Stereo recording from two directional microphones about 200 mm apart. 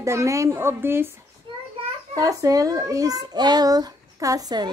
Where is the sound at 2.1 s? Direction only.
15° right (ahead or behind).